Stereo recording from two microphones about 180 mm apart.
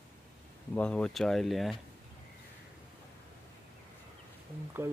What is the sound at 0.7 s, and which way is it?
Speech, 5° left (ahead or behind).